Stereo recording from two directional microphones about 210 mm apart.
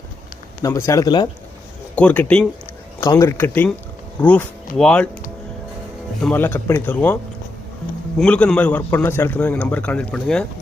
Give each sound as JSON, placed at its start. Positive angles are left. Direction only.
{"t": 0.6, "sound": "a man's voice", "side_deg": 15}
{"t": 2.0, "sound": "a man's voice", "side_deg": 5}
{"t": 6.2, "sound": "a man's voice", "side_deg": 10}
{"t": 8.2, "sound": "a man's voice", "side_deg": 5}